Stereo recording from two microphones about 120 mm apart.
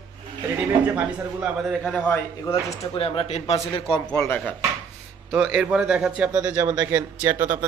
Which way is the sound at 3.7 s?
45° left (ahead or behind).